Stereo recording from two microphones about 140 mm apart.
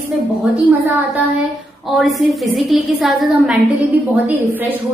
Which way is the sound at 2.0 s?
Centre (ahead or behind).